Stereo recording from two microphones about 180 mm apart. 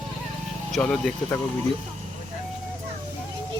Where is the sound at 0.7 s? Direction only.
5° left (ahead or behind).